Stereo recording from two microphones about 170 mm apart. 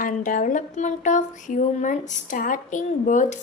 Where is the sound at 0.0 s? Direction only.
50° left (ahead or behind).